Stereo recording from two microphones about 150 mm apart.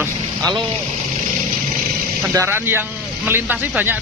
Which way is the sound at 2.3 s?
15° right (ahead or behind).